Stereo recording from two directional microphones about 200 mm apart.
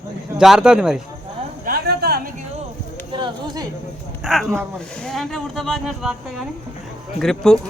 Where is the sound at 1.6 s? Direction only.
50° right (ahead or behind).